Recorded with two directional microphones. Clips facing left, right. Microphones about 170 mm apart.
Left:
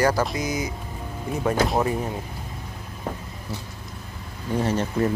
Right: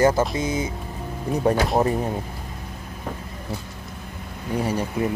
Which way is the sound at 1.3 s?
35° right (ahead or behind).